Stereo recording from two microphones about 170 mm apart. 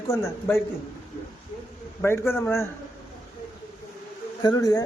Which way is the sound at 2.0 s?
15° left (ahead or behind).